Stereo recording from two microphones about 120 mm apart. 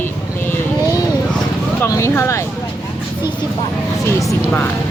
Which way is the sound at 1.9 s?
20° left (ahead or behind).